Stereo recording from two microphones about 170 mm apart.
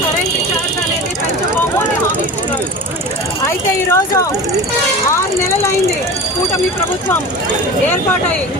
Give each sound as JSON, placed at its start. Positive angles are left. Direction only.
{"t": 3.4, "sound": "speech", "side_deg": 15}